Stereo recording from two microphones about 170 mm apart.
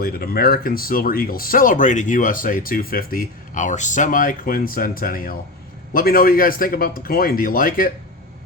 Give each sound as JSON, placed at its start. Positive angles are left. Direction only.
{"t": 0.0, "sound": "speech", "side_deg": 60}